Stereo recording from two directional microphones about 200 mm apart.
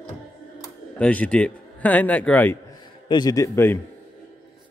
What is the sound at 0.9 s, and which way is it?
A man's voice, 5° left (ahead or behind).